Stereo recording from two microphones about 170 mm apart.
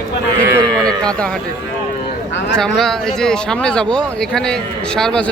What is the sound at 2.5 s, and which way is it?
Speech, centre (ahead or behind).